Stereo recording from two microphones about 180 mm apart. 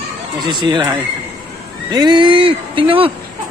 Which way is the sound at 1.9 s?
25° right (ahead or behind).